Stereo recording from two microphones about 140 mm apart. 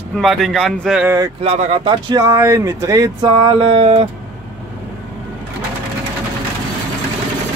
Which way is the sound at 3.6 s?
40° right (ahead or behind).